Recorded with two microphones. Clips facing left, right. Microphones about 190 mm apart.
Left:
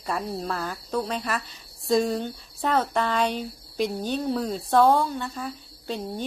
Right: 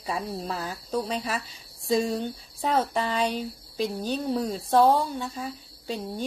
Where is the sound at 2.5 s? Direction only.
5° right (ahead or behind).